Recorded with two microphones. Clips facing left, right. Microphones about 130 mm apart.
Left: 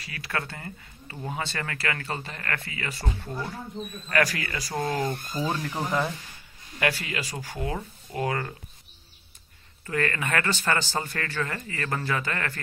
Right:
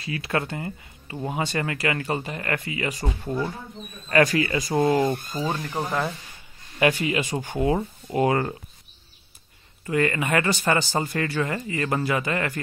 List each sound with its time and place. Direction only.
0.0 s speech: 25° right (ahead or behind)
5.5 s speech: 10° right (ahead or behind)
6.8 s speech: 20° right (ahead or behind)
9.8 s speech: 10° right (ahead or behind)